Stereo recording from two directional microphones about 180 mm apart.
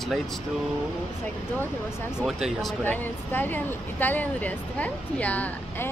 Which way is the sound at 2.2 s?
Centre (ahead or behind).